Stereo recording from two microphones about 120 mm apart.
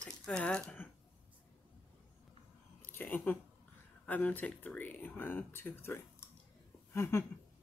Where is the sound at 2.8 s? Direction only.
15° left (ahead or behind).